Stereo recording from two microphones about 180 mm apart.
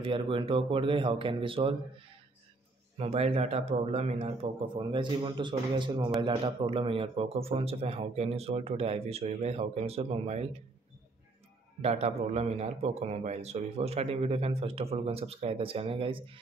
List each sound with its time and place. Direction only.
0.0 s a man's voice: 30° right (ahead or behind)
3.0 s a man's voice: 35° right (ahead or behind)
11.8 s a man's voice: 35° right (ahead or behind)